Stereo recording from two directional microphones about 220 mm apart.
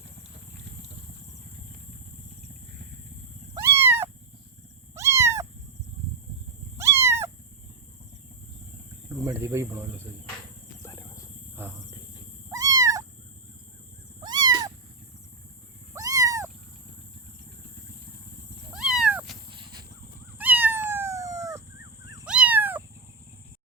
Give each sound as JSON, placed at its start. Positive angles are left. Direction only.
{"t": 3.8, "sound": "cat", "side_deg": -10}
{"t": 6.7, "sound": "cat", "side_deg": -10}
{"t": 9.2, "sound": "speech", "side_deg": -10}
{"t": 11.6, "sound": "insect", "side_deg": -10}
{"t": 12.5, "sound": "cat", "side_deg": -15}
{"t": 14.2, "sound": "cat", "side_deg": -20}
{"t": 16.0, "sound": "cat", "side_deg": -15}
{"t": 18.7, "sound": "cat", "side_deg": 0}
{"t": 19.5, "sound": "dog", "side_deg": -20}
{"t": 20.4, "sound": "cat", "side_deg": -10}